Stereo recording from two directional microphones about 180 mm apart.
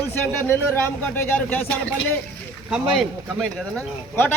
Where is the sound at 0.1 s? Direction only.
15° left (ahead or behind).